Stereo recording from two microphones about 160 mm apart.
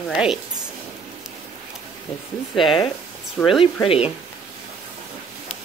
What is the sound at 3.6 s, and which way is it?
Speech, 35° left (ahead or behind).